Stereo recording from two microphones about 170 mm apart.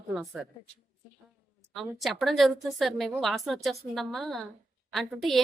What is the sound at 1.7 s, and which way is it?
A woman's voice, centre (ahead or behind).